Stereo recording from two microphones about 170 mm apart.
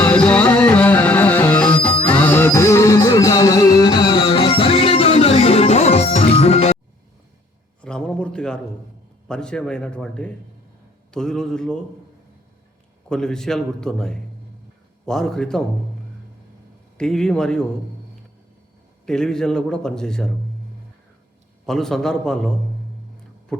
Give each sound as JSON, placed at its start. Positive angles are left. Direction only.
{"t": 0.0, "sound": "music", "side_deg": 5}
{"t": 7.8, "sound": "a sound", "side_deg": 5}
{"t": 9.2, "sound": "a man's voice", "side_deg": 5}
{"t": 13.1, "sound": "a man's voice", "side_deg": 5}
{"t": 17.0, "sound": "a man's voice", "side_deg": 5}
{"t": 19.0, "sound": "a man's voice", "side_deg": 5}
{"t": 21.7, "sound": "a man's voice", "side_deg": 0}
{"t": 23.5, "sound": "a sound", "side_deg": 5}